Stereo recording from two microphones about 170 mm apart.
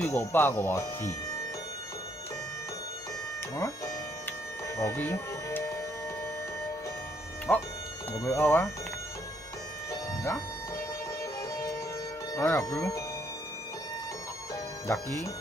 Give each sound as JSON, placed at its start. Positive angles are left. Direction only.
{"t": 0.0, "sound": "speech", "side_deg": 10}
{"t": 3.5, "sound": "music", "side_deg": 20}
{"t": 7.5, "sound": "speech", "side_deg": 10}
{"t": 9.8, "sound": "bagpipes", "side_deg": 15}
{"t": 12.4, "sound": "speech", "side_deg": 15}
{"t": 14.5, "sound": "music", "side_deg": 15}